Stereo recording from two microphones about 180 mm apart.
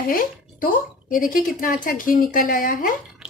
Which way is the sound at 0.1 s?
50° left (ahead or behind).